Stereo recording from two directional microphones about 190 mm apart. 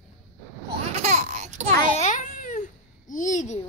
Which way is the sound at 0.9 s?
35° right (ahead or behind).